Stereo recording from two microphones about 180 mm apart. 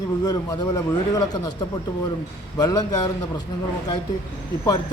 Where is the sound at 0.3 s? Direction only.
20° left (ahead or behind).